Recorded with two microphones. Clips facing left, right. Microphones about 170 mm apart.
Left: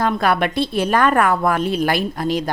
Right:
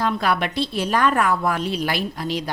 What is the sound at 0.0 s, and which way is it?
A woman's voice, 55° left (ahead or behind).